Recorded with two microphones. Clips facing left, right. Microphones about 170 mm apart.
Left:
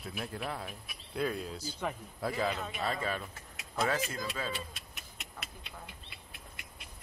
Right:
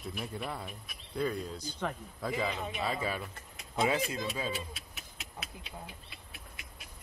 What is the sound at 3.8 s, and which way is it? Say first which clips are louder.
Speech: right 2 dB; 20° right (ahead or behind).